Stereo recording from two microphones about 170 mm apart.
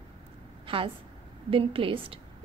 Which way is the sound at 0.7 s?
30° right (ahead or behind).